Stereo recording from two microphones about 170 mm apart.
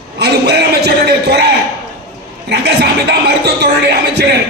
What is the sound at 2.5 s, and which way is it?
Music, 75° right (ahead or behind).